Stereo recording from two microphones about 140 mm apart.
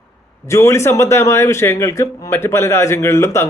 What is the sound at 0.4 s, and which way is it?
A man's voice, 20° left (ahead or behind).